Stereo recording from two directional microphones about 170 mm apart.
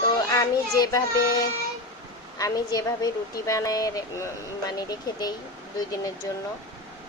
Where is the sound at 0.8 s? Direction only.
25° left (ahead or behind).